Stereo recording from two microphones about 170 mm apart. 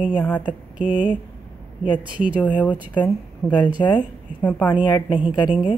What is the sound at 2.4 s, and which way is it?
A woman's voice, 10° left (ahead or behind).